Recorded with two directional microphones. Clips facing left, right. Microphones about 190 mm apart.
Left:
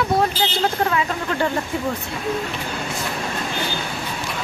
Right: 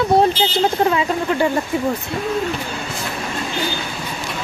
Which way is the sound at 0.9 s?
15° right (ahead or behind).